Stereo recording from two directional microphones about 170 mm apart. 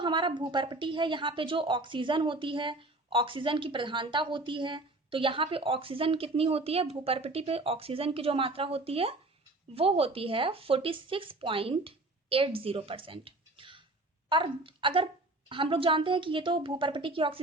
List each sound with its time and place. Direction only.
0.0 s a woman's voice: 25° right (ahead or behind)